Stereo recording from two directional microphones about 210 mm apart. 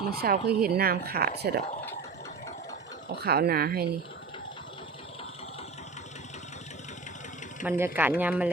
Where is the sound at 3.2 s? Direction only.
50° right (ahead or behind).